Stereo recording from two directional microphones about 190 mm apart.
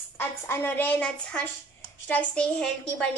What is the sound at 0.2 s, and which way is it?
A woman's voice, 15° left (ahead or behind).